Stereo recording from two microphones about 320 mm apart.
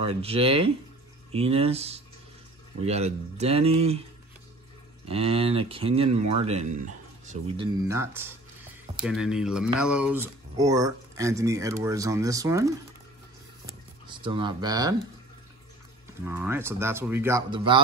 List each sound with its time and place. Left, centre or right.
0.0 s speech: centre
5.0 s speech: centre
13.7 s a sound: centre
16.2 s speech: centre